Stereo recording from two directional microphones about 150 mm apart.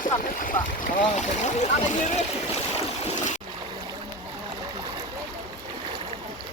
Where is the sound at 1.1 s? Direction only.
50° left (ahead or behind).